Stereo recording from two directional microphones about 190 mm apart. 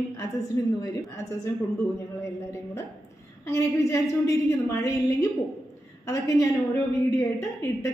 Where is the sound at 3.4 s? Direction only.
15° left (ahead or behind).